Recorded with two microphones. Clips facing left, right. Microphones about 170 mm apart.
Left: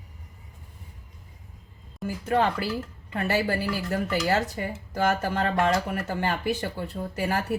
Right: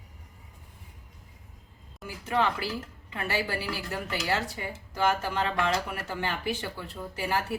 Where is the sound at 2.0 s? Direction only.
50° left (ahead or behind).